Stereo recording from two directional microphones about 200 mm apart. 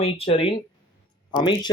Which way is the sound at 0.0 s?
30° left (ahead or behind).